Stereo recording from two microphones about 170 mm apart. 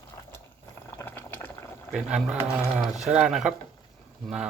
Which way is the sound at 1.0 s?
10° left (ahead or behind).